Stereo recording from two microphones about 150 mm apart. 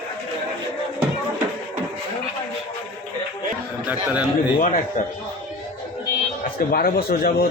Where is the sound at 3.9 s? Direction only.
10° right (ahead or behind).